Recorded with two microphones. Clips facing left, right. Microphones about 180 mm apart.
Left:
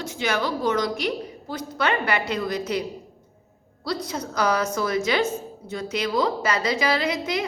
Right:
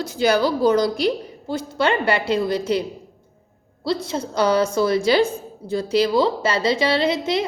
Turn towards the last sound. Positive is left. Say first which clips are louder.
# right 5 dB
turn(degrees=-30)  # may be behind; listen again after turning